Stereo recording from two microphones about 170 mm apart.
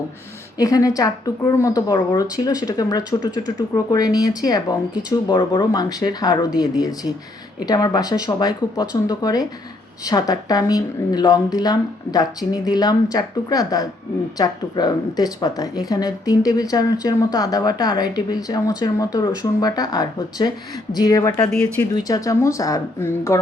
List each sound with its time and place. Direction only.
0.6 s speech: 20° left (ahead or behind)
21.9 s speech: 20° left (ahead or behind)